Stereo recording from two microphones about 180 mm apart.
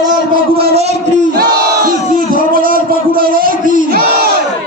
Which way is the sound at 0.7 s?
40° right (ahead or behind).